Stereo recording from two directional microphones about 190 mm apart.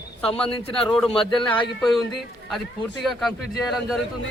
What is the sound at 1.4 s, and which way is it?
Speech, 25° left (ahead or behind).